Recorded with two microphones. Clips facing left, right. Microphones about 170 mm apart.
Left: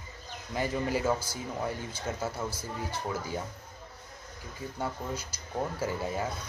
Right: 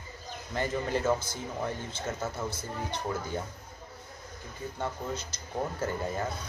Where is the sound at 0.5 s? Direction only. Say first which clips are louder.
Even; 10° left (ahead or behind).